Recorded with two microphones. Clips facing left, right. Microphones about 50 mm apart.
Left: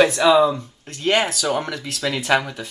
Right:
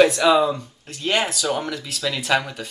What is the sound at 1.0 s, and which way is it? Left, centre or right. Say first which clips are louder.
Speech: left 3 dB; left.